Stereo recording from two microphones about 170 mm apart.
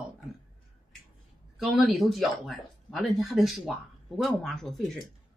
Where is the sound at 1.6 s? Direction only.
Centre (ahead or behind).